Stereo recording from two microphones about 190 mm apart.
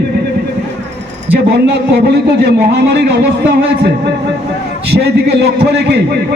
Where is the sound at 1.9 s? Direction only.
60° right (ahead or behind).